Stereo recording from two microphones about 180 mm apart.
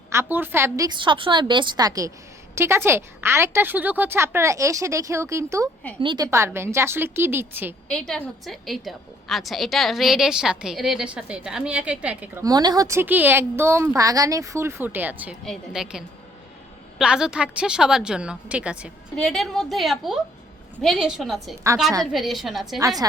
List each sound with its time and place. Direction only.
0.1 s a woman's voice: 15° right (ahead or behind)
6.0 s a woman's voice: 25° right (ahead or behind)
6.2 s a woman's voice: 15° right (ahead or behind)
7.9 s a woman's voice: 5° left (ahead or behind)
22.8 s a woman's voice: 20° right (ahead or behind)